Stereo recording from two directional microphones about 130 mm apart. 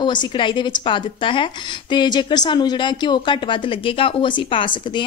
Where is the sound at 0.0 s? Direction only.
35° left (ahead or behind).